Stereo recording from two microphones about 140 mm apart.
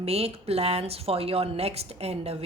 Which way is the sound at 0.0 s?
45° right (ahead or behind).